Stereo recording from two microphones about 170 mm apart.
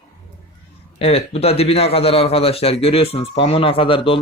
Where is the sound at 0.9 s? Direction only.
35° left (ahead or behind).